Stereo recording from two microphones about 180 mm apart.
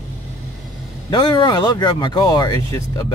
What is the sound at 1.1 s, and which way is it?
Speech, 25° left (ahead or behind).